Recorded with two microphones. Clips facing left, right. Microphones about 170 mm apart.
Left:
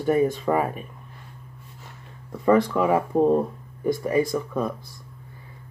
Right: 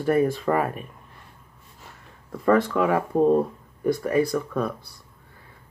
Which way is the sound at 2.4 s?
5° left (ahead or behind).